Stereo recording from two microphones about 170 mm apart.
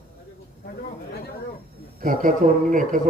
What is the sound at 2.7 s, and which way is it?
Speech, 50° right (ahead or behind).